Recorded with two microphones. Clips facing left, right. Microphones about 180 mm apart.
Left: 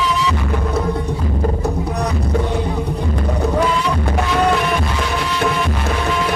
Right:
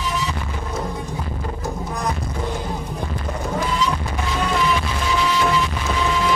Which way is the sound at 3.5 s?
65° left (ahead or behind).